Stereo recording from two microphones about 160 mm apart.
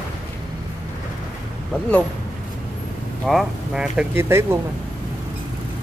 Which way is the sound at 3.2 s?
Centre (ahead or behind).